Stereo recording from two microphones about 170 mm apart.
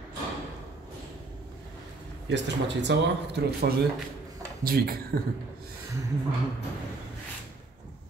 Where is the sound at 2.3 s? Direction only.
90° right.